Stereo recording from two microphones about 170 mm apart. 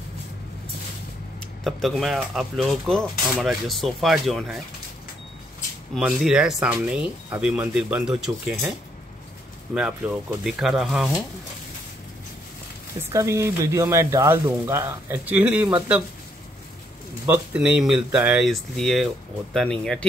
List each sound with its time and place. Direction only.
1.6 s speech: centre (ahead or behind)
5.9 s speech: 5° right (ahead or behind)
9.8 s speech: 5° right (ahead or behind)
13.1 s speech: 15° right (ahead or behind)
17.3 s speech: 5° right (ahead or behind)